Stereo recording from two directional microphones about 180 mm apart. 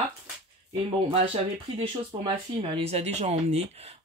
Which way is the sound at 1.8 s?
25° right (ahead or behind).